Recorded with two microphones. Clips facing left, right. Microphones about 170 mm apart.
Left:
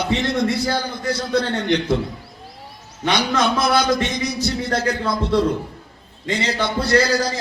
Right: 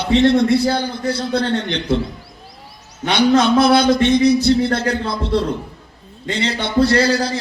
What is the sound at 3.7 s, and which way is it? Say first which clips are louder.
Speech: right 6 dB; 30° right (ahead or behind).